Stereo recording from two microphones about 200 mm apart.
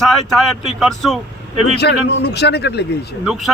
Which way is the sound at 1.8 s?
55° left (ahead or behind).